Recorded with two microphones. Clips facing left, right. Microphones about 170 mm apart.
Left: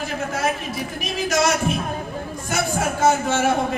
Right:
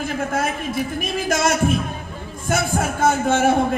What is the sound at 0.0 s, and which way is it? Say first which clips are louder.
A man's voice: right 1 dB; 50° right (ahead or behind).